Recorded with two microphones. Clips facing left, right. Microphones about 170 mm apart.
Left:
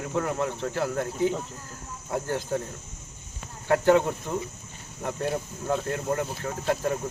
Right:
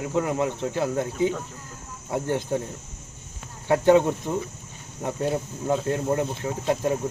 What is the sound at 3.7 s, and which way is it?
Speech, 15° right (ahead or behind).